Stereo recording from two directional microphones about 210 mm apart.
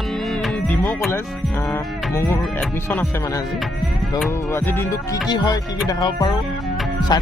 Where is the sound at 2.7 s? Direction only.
10° left (ahead or behind).